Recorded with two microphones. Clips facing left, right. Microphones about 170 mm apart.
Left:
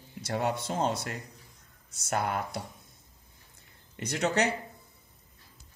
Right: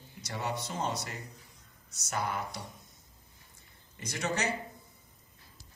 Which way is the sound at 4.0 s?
60° left (ahead or behind).